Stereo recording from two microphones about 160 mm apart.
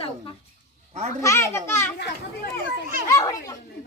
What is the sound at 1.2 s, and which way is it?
Speech, 20° left (ahead or behind).